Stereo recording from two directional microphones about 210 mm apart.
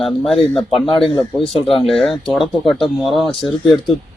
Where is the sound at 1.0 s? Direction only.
25° left (ahead or behind).